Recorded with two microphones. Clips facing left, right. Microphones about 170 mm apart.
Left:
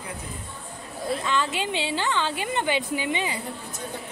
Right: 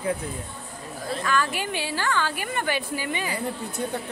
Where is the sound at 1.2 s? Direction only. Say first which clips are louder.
Right 3 dB; 20° left (ahead or behind).